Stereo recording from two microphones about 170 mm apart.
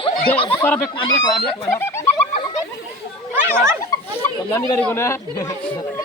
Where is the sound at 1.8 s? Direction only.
15° left (ahead or behind).